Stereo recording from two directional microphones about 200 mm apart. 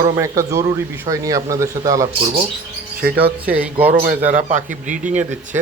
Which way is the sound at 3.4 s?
5° right (ahead or behind).